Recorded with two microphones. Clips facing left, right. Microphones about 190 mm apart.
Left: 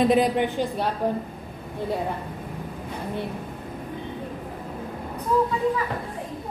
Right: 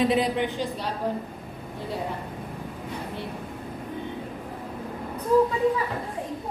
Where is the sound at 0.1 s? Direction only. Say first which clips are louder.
Left 4 dB; 50° left (ahead or behind).